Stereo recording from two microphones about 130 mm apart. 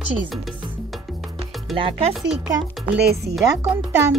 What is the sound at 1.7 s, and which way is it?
Music, 45° right (ahead or behind).